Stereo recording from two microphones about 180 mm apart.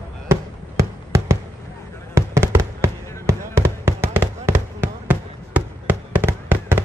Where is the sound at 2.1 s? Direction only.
15° right (ahead or behind).